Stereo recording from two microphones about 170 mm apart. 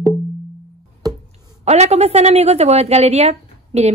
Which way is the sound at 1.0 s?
20° right (ahead or behind).